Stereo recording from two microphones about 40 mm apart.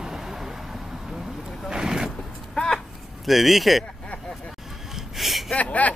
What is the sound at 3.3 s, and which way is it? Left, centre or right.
Speech, centre.